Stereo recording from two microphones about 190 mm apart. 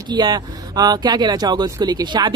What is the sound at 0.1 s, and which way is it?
Speech, 20° right (ahead or behind).